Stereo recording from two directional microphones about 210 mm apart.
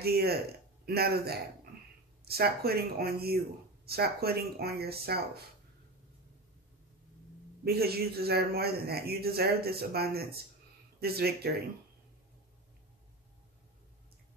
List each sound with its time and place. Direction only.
0.0 s a man's voice: 50° right (ahead or behind)
7.6 s a man's voice: 50° right (ahead or behind)